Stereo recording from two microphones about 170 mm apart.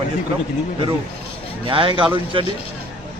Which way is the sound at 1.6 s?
30° right (ahead or behind).